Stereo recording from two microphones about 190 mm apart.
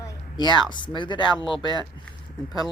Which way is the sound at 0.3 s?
25° left (ahead or behind).